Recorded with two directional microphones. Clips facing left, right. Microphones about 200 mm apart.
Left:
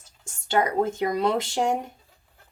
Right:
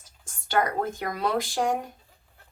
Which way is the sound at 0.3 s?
25° left (ahead or behind).